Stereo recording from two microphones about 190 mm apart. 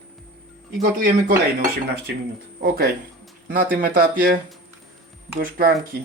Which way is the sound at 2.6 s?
55° right (ahead or behind).